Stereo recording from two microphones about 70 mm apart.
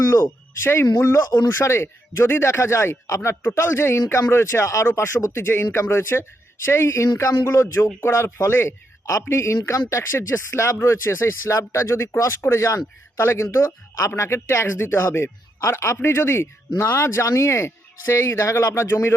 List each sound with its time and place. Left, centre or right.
0.0 s speech: left